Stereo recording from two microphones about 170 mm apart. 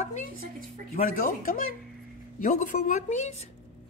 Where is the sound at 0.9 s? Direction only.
50° left (ahead or behind).